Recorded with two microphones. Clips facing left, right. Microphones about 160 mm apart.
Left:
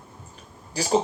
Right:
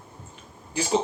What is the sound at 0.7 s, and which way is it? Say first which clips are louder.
Speech: left 1 dB; 35° left (ahead or behind).